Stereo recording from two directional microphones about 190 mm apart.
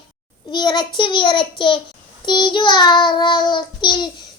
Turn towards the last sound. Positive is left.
turn(degrees=25)  # may be behind; listen again after turning